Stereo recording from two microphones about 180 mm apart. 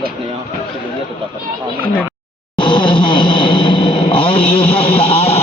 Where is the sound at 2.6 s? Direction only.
30° left (ahead or behind).